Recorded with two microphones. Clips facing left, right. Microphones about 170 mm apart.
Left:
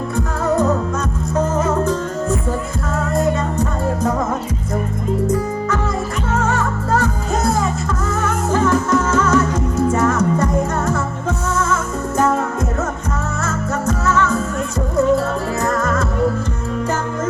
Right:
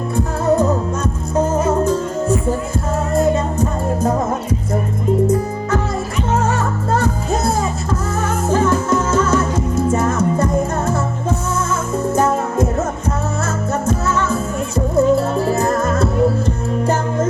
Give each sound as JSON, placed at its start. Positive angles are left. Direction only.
{"t": 8.9, "sound": "music", "side_deg": -25}
{"t": 15.6, "sound": "music", "side_deg": -25}